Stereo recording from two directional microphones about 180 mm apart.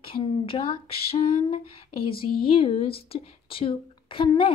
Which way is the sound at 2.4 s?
30° left (ahead or behind).